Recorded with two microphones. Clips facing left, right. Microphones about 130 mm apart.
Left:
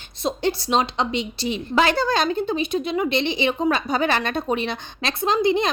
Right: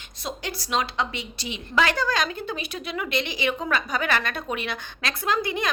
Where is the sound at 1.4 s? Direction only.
35° left (ahead or behind).